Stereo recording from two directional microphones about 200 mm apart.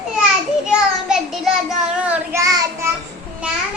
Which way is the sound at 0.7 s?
5° right (ahead or behind).